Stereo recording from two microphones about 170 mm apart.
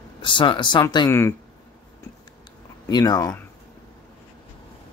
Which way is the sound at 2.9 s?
20° left (ahead or behind).